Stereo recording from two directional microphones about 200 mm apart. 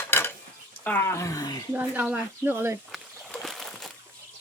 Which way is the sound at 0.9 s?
10° left (ahead or behind).